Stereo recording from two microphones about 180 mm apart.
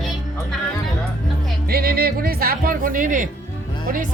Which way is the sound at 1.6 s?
55° right (ahead or behind).